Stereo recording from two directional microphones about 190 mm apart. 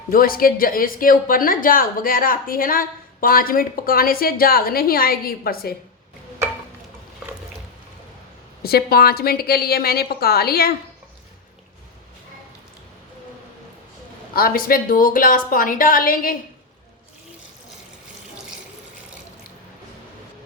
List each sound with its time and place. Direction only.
0.1 s speech: 50° left (ahead or behind)
8.6 s speech: 55° left (ahead or behind)
14.3 s speech: 50° left (ahead or behind)